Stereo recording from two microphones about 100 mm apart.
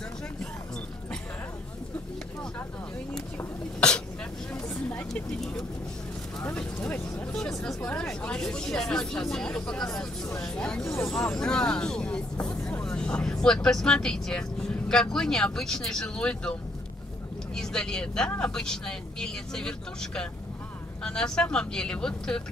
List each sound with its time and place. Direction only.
3.3 s sneeze: 10° left (ahead or behind)
4.8 s speech: 15° left (ahead or behind)
6.5 s speech: 10° left (ahead or behind)
17.6 s speech: 5° left (ahead or behind)